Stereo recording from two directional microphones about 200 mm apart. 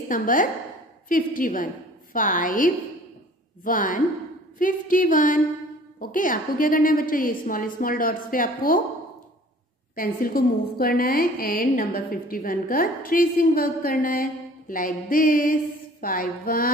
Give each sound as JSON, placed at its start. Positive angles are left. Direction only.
{"t": 0.1, "sound": "a woman's voice", "side_deg": 40}
{"t": 9.9, "sound": "a woman's voice", "side_deg": 45}